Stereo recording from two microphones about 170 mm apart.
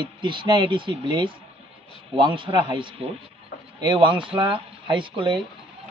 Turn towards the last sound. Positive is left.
turn(degrees=-30)  # may be behind; listen again after turning